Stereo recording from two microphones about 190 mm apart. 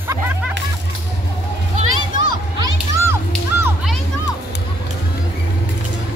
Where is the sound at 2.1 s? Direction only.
20° right (ahead or behind).